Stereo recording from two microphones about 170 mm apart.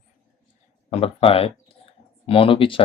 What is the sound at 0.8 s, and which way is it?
Speech, 35° left (ahead or behind).